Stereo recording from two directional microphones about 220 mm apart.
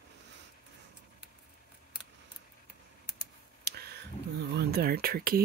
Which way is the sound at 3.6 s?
45° right (ahead or behind).